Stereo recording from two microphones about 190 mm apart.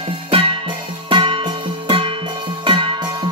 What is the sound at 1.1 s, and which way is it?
Music, 25° right (ahead or behind).